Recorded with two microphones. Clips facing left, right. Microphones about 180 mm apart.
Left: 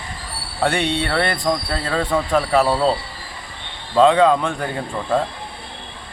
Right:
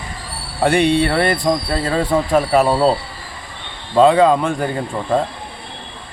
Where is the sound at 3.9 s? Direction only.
5° right (ahead or behind).